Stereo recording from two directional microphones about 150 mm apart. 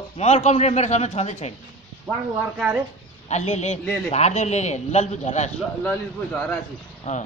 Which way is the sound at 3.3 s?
50° left (ahead or behind).